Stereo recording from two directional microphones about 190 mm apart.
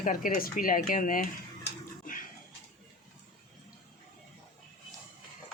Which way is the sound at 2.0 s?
45° left (ahead or behind).